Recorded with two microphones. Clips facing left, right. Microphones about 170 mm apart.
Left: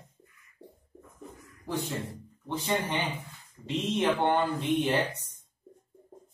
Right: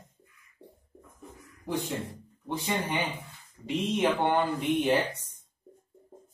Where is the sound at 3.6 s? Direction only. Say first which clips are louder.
Right 1 dB; 10° right (ahead or behind).